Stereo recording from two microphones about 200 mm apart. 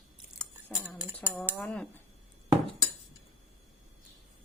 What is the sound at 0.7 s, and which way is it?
A woman's voice, 10° left (ahead or behind).